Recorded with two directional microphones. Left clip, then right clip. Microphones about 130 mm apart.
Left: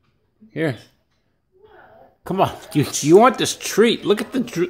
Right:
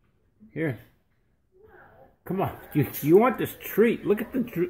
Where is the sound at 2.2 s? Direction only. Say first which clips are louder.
Left 10 dB; 35° left (ahead or behind).